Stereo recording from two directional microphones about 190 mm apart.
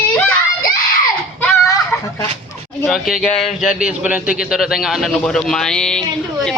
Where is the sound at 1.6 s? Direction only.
15° left (ahead or behind).